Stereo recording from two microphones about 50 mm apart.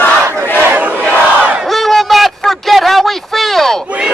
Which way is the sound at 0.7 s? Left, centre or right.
Right.